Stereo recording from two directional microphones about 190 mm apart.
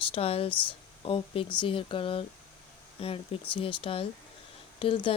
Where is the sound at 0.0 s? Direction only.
30° left (ahead or behind).